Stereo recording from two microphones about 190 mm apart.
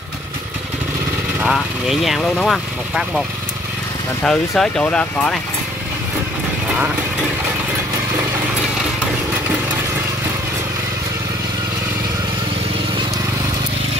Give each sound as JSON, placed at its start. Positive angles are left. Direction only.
{"t": 1.4, "sound": "speech", "side_deg": 0}
{"t": 4.2, "sound": "speech", "side_deg": 5}